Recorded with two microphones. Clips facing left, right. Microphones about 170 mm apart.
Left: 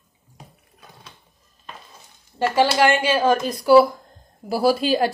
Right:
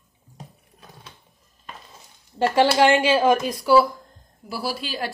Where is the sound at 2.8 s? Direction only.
25° right (ahead or behind).